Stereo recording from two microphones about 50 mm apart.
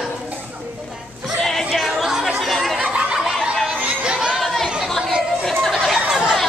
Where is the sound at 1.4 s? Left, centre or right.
Centre.